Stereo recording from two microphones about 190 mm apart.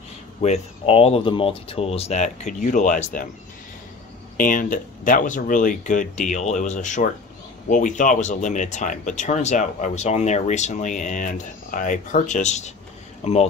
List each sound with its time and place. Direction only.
0.4 s speech: 30° left (ahead or behind)
4.4 s speech: 45° left (ahead or behind)